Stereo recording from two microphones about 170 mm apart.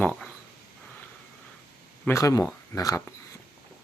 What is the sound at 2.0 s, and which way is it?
Speech, 15° left (ahead or behind).